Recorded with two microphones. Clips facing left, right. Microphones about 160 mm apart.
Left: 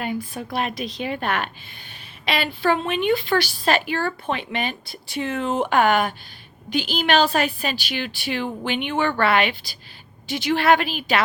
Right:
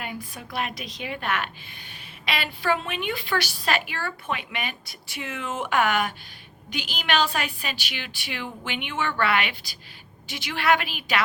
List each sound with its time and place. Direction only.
0.0 s a woman's voice: 30° left (ahead or behind)